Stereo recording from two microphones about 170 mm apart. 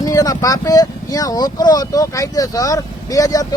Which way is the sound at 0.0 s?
20° left (ahead or behind).